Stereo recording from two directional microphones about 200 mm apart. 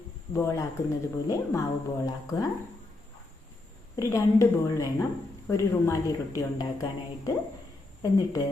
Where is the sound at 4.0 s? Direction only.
15° left (ahead or behind).